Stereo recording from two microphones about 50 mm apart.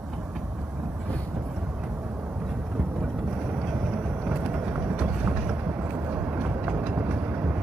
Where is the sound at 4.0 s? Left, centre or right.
Right.